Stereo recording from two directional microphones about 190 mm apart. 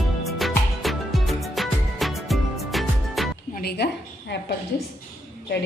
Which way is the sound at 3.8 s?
65° left (ahead or behind).